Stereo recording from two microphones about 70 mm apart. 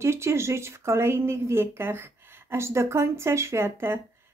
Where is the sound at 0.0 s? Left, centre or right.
Right.